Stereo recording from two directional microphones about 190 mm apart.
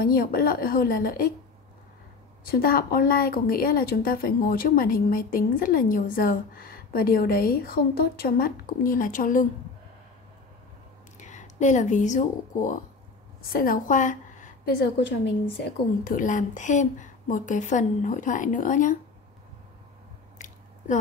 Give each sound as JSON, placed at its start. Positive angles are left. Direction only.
{"t": 0.0, "sound": "a woman's voice", "side_deg": 50}
{"t": 2.4, "sound": "a woman's voice", "side_deg": 50}
{"t": 11.1, "sound": "a woman's voice", "side_deg": 40}
{"t": 16.0, "sound": "a woman's voice", "side_deg": 45}
{"t": 20.3, "sound": "squish", "side_deg": 40}